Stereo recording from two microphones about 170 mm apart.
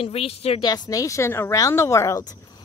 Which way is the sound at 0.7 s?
20° left (ahead or behind).